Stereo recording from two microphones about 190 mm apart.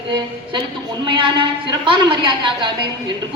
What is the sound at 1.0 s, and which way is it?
A woman's voice, 25° right (ahead or behind).